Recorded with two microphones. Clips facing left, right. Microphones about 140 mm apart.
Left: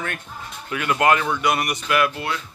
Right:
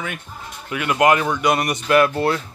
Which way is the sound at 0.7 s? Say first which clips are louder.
Right 2 dB; 20° right (ahead or behind).